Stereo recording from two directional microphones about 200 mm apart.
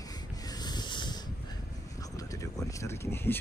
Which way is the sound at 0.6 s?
20° left (ahead or behind).